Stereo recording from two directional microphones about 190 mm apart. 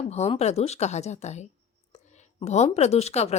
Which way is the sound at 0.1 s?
35° left (ahead or behind).